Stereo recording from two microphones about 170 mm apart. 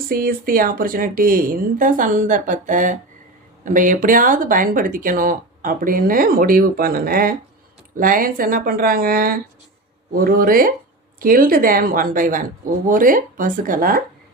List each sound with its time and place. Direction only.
0.1 s speech: 60° right (ahead or behind)